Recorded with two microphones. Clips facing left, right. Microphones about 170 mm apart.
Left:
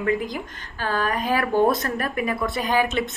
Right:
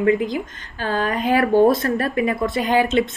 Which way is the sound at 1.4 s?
50° right (ahead or behind).